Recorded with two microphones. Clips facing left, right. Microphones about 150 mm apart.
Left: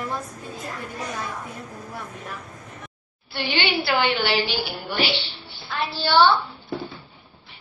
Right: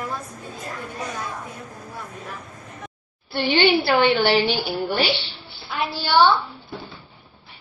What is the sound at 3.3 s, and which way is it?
A woman's voice, 45° right (ahead or behind).